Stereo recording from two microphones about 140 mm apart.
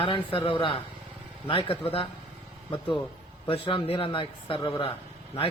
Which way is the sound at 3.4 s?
40° left (ahead or behind).